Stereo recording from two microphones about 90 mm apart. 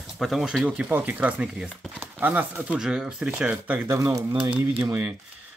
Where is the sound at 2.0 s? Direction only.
20° right (ahead or behind).